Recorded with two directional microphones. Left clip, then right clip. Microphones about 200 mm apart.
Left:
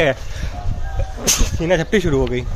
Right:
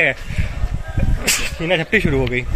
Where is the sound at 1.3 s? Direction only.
25° left (ahead or behind).